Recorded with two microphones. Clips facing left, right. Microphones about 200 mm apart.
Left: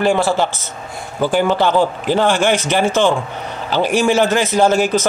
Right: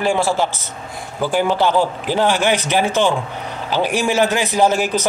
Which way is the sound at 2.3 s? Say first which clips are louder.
Left 1 dB; 50° left (ahead or behind).